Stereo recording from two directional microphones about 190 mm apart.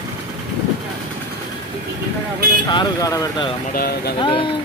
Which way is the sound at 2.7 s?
20° left (ahead or behind).